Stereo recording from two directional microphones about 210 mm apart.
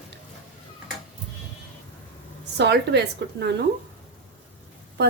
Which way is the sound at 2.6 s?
55° right (ahead or behind).